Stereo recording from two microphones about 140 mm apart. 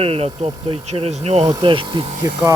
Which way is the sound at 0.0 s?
45° right (ahead or behind).